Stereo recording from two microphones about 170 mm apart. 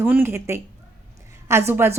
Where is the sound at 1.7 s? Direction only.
15° right (ahead or behind).